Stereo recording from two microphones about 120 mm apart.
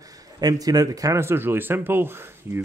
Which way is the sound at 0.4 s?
30° right (ahead or behind).